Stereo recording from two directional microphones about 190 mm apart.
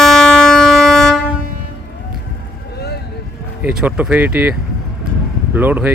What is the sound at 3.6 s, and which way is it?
Speech, 5° right (ahead or behind).